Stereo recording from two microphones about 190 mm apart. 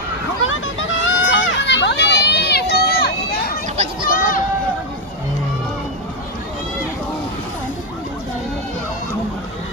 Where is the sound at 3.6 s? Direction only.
35° right (ahead or behind).